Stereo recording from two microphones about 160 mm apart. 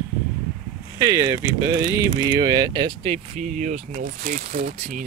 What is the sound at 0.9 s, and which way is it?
Speech, 20° right (ahead or behind).